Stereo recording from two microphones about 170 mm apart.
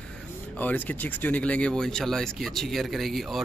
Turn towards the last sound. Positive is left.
turn(degrees=0)  # may be behind; listen again after turning